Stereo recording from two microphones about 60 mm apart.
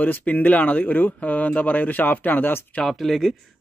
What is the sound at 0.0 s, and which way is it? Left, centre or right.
Speech, left.